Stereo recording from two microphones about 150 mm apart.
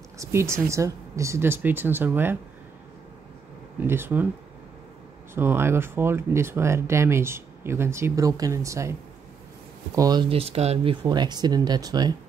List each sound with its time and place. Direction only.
0.2 s speech: 20° right (ahead or behind)
3.8 s speech: 15° right (ahead or behind)
5.3 s speech: 15° right (ahead or behind)
9.9 s speech: 25° right (ahead or behind)